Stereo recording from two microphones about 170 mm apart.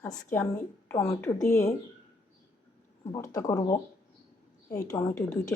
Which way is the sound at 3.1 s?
20° left (ahead or behind).